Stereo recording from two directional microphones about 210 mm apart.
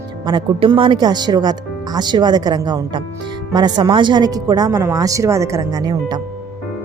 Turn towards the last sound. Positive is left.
turn(degrees=-20)  # may be behind; listen again after turning